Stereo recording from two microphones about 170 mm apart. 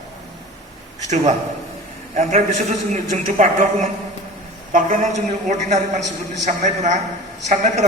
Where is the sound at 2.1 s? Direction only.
45° right (ahead or behind).